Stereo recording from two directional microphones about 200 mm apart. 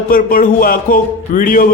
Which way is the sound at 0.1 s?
45° left (ahead or behind).